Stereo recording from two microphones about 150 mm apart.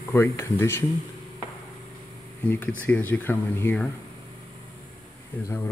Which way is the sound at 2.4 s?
10° left (ahead or behind).